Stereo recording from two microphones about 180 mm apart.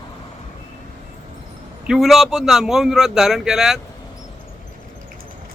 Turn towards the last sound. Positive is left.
turn(degrees=0)  # may be behind; listen again after turning